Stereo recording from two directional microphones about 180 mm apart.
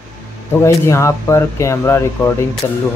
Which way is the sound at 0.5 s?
15° left (ahead or behind).